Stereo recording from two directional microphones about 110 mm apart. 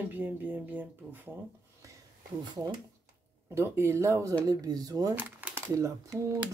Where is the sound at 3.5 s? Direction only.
25° right (ahead or behind).